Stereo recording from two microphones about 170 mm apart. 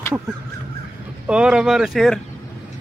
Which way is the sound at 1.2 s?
5° right (ahead or behind).